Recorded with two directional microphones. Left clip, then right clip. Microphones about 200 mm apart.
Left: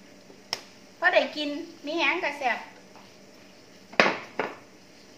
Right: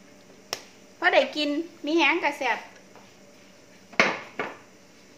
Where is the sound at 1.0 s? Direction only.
50° right (ahead or behind).